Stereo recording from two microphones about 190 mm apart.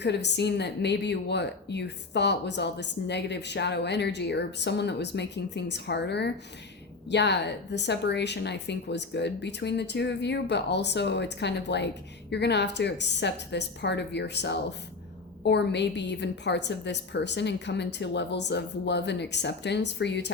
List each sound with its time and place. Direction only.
0.0 s speech: 65° left (ahead or behind)